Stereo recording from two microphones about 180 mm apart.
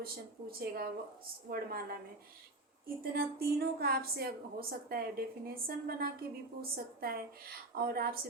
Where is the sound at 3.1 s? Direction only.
60° right (ahead or behind).